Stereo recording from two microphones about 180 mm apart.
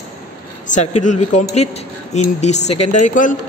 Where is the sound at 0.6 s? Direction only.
40° left (ahead or behind).